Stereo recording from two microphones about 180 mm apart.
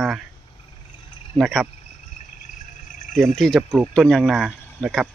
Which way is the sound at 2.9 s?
45° left (ahead or behind).